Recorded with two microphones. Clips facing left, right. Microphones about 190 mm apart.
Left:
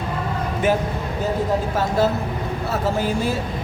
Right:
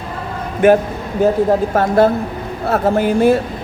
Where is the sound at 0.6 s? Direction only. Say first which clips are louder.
Right 10 dB; 60° right (ahead or behind).